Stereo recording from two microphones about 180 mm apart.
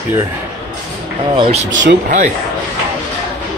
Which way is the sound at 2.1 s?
45° right (ahead or behind).